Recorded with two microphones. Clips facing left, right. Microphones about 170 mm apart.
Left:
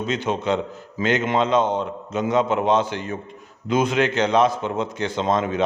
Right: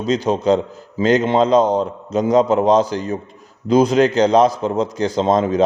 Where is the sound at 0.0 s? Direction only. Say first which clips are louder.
Right 6 dB; 35° right (ahead or behind).